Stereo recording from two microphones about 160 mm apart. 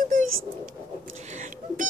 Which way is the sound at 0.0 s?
55° right (ahead or behind).